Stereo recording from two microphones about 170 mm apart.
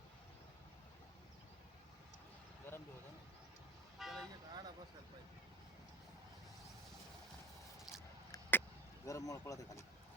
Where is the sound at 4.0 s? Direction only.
Centre (ahead or behind).